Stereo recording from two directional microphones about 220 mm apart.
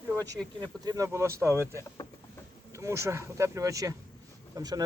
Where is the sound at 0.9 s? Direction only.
15° right (ahead or behind).